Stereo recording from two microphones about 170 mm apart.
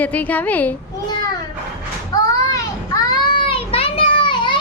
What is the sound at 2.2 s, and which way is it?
Child singing, 20° left (ahead or behind).